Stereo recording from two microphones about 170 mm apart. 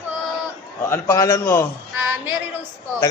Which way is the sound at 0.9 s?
15° left (ahead or behind).